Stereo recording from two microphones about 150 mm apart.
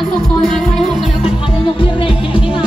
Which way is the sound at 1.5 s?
35° left (ahead or behind).